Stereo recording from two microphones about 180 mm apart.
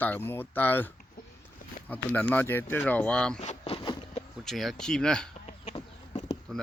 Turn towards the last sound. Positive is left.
turn(degrees=35)  # may be behind; listen again after turning